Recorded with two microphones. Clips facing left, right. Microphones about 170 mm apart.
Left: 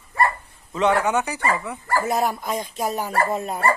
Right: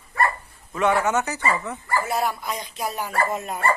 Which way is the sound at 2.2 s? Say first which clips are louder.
Left 3 dB; 45° left (ahead or behind).